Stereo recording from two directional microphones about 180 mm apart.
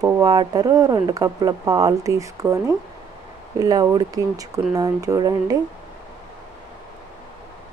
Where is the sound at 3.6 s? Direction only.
20° right (ahead or behind).